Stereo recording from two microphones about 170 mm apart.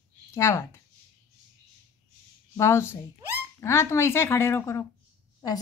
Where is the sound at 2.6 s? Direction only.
15° left (ahead or behind).